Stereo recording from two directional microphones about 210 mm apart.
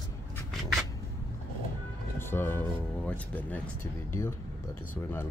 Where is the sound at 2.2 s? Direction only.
10° left (ahead or behind).